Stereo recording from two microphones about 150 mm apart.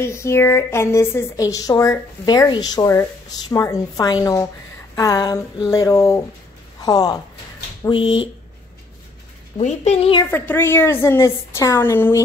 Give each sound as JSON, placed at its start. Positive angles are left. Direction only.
{"t": 0.0, "sound": "speech", "side_deg": 15}
{"t": 7.9, "sound": "speech", "side_deg": 35}
{"t": 9.6, "sound": "a woman's voice", "side_deg": 50}
{"t": 10.3, "sound": "a woman's voice", "side_deg": 15}